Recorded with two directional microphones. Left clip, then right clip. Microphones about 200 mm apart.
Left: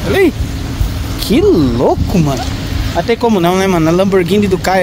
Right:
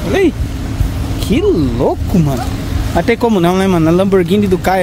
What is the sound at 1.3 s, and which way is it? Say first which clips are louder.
Speech: left 3 dB; 20° left (ahead or behind).